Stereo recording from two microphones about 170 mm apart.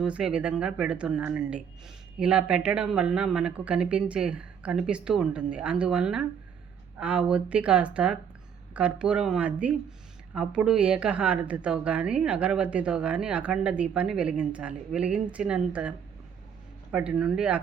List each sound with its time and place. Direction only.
0.0 s a woman's voice: 5° right (ahead or behind)